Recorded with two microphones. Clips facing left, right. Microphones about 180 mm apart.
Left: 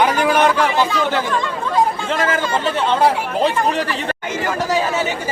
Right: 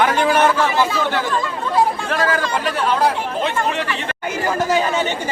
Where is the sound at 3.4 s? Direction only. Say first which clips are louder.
Left 4 dB; 35° left (ahead or behind).